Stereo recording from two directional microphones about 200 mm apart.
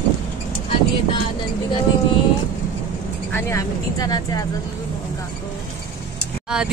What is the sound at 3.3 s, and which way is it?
Speech, 15° left (ahead or behind).